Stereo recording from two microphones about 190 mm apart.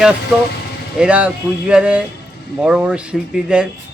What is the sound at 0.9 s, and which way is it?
Speech, 5° right (ahead or behind).